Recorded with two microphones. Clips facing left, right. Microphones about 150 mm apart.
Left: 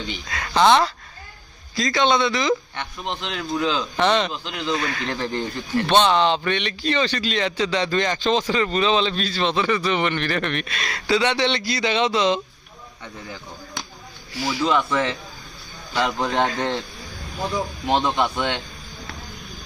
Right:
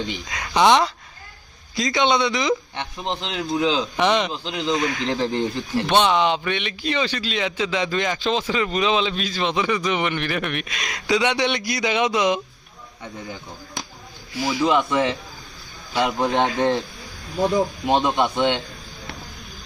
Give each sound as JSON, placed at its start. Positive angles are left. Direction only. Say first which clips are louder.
{"t": 0.3, "sound": "speech", "louder": "even", "side_deg": -15}
{"t": 5.8, "sound": "speech", "louder": "left 1 dB", "side_deg": -10}
{"t": 14.3, "sound": "speech", "louder": "right 2 dB", "side_deg": -15}
{"t": 17.8, "sound": "speech", "louder": "left 2 dB", "side_deg": -15}